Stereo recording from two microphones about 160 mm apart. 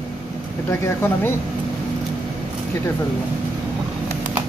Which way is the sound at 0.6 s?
15° left (ahead or behind).